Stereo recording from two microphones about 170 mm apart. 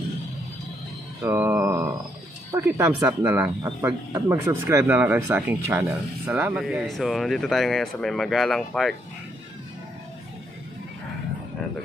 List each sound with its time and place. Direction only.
1.2 s mantra: 15° right (ahead or behind)
2.5 s speech: 15° right (ahead or behind); by 8.9 s centre (ahead or behind)